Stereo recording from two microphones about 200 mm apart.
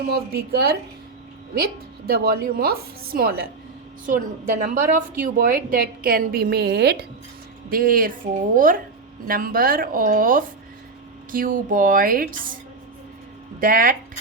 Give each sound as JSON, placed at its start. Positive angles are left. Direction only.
{"t": 0.1, "sound": "a woman's voice", "side_deg": -50}
{"t": 13.6, "sound": "a woman's voice", "side_deg": -45}